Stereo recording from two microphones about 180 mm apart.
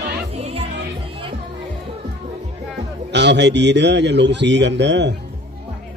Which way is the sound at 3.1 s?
75° right (ahead or behind).